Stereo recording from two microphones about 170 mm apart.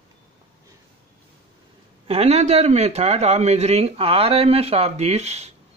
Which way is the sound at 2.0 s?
40° right (ahead or behind).